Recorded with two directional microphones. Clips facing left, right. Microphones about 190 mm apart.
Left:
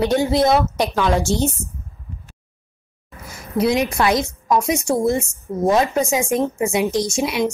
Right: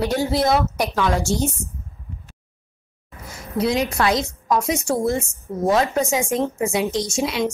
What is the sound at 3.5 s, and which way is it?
A woman's voice, 20° left (ahead or behind).